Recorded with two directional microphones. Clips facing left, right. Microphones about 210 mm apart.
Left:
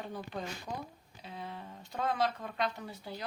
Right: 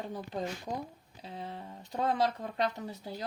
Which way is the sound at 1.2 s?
30° right (ahead or behind).